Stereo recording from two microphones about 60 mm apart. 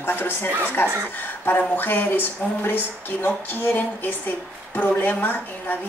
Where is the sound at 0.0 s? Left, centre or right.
Left.